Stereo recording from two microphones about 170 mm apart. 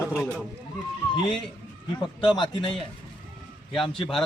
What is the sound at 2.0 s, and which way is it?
Speech, 25° left (ahead or behind).